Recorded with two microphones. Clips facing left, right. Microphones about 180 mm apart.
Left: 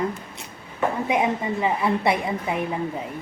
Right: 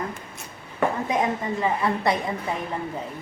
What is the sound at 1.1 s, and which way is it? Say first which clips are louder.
A woman's voice: left 2 dB; 15° left (ahead or behind).